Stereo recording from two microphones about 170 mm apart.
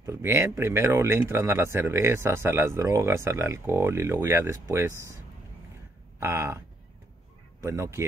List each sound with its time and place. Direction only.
0.0 s speech: 15° right (ahead or behind)
7.6 s speech: 15° right (ahead or behind)